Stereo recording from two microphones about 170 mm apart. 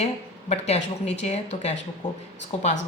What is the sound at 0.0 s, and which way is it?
A woman's voice, 40° left (ahead or behind).